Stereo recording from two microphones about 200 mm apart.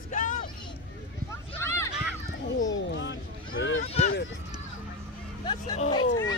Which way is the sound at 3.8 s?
35° left (ahead or behind).